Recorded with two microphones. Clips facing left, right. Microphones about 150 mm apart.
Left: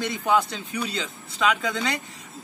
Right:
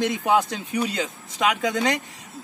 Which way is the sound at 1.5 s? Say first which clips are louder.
Right 5 dB; 45° right (ahead or behind).